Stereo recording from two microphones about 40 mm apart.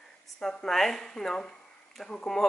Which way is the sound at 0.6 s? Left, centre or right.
Centre.